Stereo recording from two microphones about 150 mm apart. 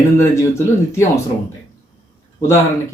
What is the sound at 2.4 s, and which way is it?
Speech, 20° left (ahead or behind).